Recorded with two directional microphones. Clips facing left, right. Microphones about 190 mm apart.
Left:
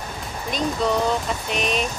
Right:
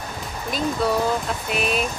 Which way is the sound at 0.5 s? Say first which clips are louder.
Even; 5° right (ahead or behind).